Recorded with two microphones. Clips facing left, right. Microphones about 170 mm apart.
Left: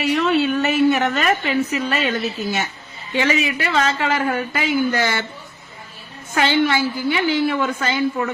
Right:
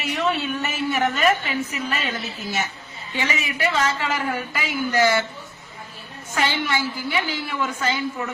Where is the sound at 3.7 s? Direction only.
65° left (ahead or behind).